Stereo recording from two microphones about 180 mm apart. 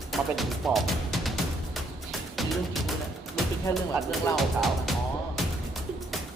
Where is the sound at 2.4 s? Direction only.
Centre (ahead or behind).